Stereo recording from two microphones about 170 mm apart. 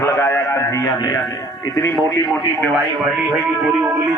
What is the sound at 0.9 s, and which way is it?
Speech, 25° left (ahead or behind).